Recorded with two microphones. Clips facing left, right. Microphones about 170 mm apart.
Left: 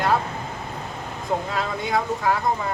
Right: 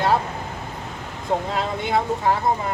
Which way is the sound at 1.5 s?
25° right (ahead or behind).